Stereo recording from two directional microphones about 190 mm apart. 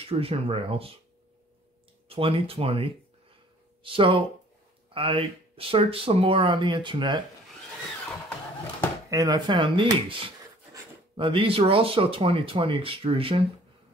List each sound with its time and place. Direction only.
0.0 s speech: 30° right (ahead or behind)
2.0 s speech: 30° right (ahead or behind)
9.1 s speech: 20° right (ahead or behind)